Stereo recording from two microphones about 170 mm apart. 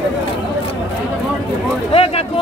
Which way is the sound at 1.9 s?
35° left (ahead or behind).